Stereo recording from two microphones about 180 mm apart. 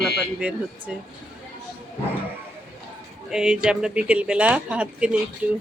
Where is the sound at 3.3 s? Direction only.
5° right (ahead or behind).